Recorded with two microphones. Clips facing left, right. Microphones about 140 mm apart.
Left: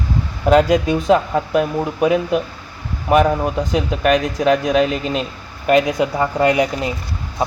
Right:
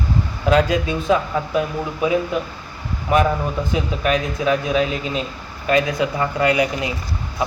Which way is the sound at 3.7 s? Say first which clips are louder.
Left 4 dB; 70° left (ahead or behind).